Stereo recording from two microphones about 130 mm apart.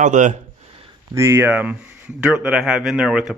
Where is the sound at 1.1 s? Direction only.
20° right (ahead or behind).